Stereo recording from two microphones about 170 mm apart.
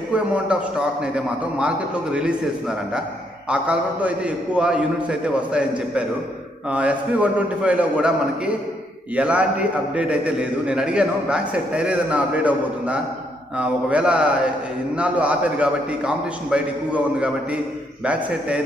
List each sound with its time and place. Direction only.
0.1 s a man's voice: 5° right (ahead or behind)
3.4 s a man's voice: 5° right (ahead or behind)